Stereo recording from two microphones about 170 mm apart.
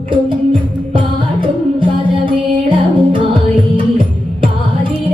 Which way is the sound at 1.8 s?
30° right (ahead or behind).